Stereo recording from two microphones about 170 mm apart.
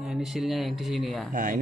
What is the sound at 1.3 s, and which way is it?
Speech, 50° right (ahead or behind).